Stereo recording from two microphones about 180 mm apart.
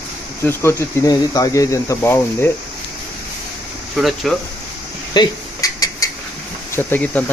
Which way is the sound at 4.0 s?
Centre (ahead or behind).